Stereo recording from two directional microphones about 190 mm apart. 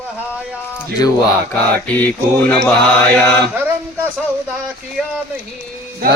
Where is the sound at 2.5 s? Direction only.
5° left (ahead or behind).